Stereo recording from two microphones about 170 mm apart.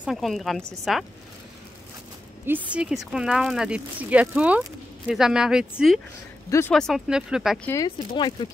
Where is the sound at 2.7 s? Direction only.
5° right (ahead or behind).